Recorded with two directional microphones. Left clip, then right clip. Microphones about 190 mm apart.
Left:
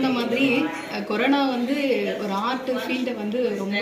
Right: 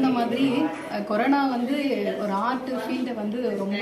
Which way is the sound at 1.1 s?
20° right (ahead or behind).